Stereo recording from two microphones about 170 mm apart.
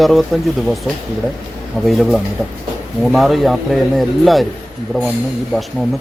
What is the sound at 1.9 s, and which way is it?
Speech, centre (ahead or behind).